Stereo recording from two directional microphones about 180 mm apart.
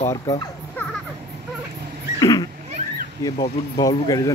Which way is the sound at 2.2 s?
20° left (ahead or behind).